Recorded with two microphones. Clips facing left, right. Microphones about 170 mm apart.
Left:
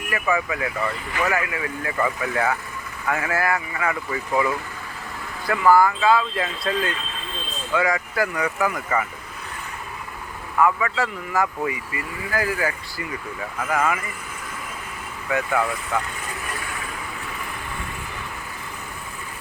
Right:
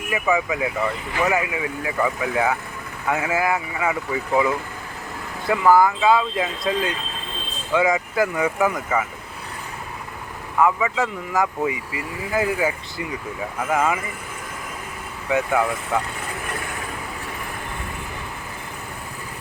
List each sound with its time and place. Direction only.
0.1 s speech: 10° right (ahead or behind)
5.5 s speech: 15° right (ahead or behind)
8.7 s speech: 5° right (ahead or behind)
10.6 s speech: 10° right (ahead or behind)
15.3 s speech: 15° right (ahead or behind)